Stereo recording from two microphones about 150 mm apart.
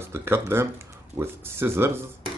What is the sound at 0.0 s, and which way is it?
Speech, 15° right (ahead or behind).